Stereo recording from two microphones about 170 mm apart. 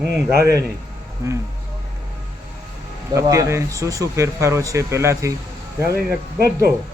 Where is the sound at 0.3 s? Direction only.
70° right (ahead or behind).